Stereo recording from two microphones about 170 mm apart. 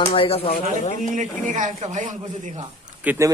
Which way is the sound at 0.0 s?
35° left (ahead or behind).